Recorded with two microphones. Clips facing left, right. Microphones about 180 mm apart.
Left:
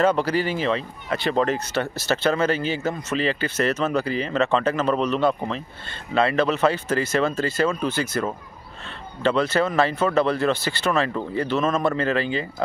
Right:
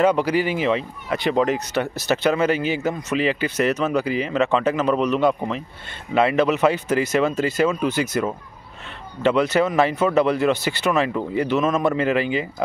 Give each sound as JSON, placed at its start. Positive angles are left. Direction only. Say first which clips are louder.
{"t": 0.0, "sound": "speech", "louder": "right 2 dB", "side_deg": -15}